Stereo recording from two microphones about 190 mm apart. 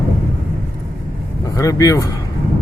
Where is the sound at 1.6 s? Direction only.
15° left (ahead or behind).